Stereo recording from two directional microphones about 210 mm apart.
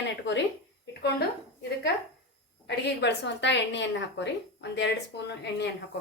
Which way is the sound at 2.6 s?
55° left (ahead or behind).